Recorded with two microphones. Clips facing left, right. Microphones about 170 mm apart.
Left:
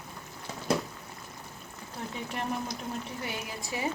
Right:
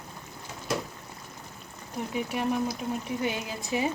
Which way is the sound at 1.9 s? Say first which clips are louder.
Right 6 dB; 10° right (ahead or behind).